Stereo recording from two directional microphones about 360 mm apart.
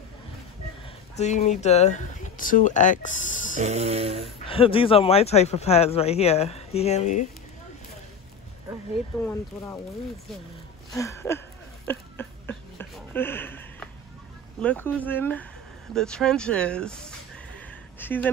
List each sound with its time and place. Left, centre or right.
1.1 s speech: centre
3.5 s speech: centre
4.5 s speech: centre
9.2 s speech: centre
11.0 s speech: centre
11.9 s a sound: centre
14.6 s speech: centre
17.6 s a sound: centre